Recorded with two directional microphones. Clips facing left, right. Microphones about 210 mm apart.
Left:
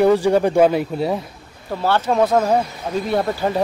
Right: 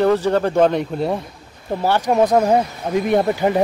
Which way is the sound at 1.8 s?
15° right (ahead or behind).